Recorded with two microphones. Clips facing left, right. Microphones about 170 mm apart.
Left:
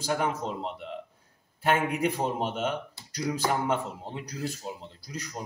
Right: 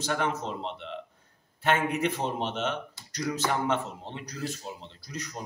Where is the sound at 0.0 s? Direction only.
10° left (ahead or behind).